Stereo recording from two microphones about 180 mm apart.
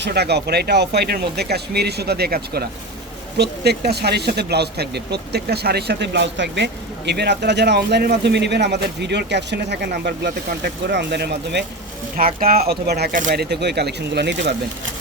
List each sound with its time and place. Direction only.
0.0 s speech: 65° right (ahead or behind)
12.1 s speech: 50° right (ahead or behind); by 14.5 s 75° right (ahead or behind)